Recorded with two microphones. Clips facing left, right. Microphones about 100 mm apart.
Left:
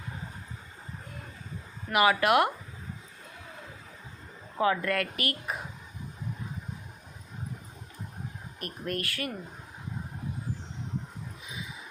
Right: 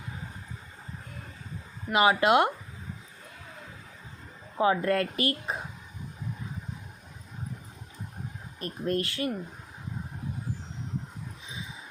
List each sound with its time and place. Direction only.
1.9 s speech: 25° right (ahead or behind)
4.5 s speech: 25° right (ahead or behind)
8.6 s speech: 25° right (ahead or behind)
11.4 s a sound: 25° right (ahead or behind)